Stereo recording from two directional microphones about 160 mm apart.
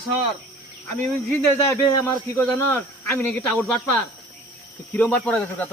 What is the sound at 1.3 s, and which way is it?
Speech, 15° left (ahead or behind).